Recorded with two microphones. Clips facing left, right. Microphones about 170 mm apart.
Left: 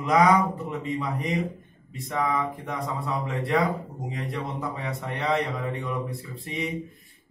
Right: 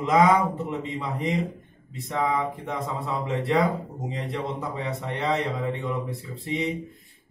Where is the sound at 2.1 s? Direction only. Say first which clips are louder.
Right 1 dB; 25° right (ahead or behind).